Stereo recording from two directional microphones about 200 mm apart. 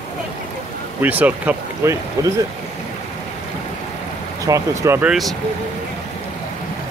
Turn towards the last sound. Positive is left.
turn(degrees=-15)  # may be behind; listen again after turning